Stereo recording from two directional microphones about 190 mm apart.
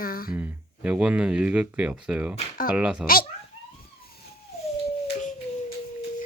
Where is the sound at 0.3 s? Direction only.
10° right (ahead or behind).